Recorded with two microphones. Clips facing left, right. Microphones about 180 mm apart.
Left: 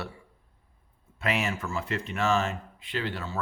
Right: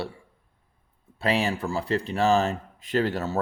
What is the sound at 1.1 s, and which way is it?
Speech, 35° right (ahead or behind).